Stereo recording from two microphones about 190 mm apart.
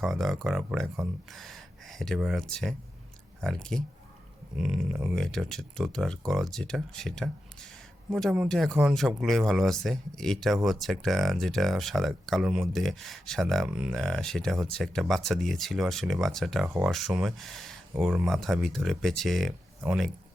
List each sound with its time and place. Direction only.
0.0 s speech: centre (ahead or behind)
16.6 s speech: 10° right (ahead or behind)